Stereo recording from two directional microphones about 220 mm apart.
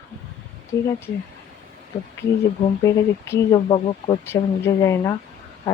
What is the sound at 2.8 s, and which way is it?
Speech, 20° left (ahead or behind).